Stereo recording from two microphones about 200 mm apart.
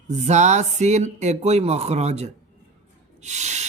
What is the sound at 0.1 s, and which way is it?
Speech, 35° right (ahead or behind).